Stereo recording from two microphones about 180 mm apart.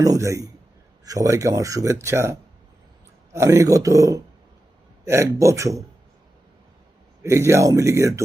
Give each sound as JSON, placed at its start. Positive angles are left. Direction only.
{"t": 0.0, "sound": "speech", "side_deg": -15}
{"t": 7.2, "sound": "speech", "side_deg": -15}